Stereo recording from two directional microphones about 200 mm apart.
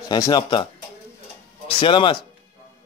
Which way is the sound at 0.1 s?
20° left (ahead or behind).